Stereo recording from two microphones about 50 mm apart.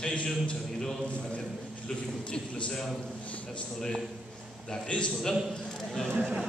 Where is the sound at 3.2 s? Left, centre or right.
Left.